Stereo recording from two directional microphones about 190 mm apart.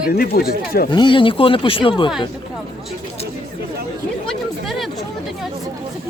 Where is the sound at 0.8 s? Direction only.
25° left (ahead or behind).